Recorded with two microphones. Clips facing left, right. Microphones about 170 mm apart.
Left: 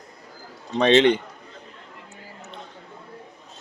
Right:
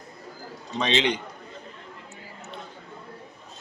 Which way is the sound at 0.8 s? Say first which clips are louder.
Left 8 dB; 55° left (ahead or behind).